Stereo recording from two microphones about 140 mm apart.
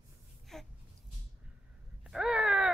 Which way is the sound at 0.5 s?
5° left (ahead or behind).